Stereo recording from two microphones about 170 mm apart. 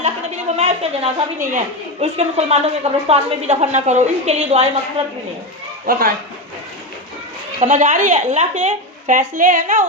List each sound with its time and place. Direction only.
0.0 s a woman's voice: 40° right (ahead or behind)
5.8 s a man's voice: 55° right (ahead or behind)
7.6 s a woman's voice: 45° right (ahead or behind)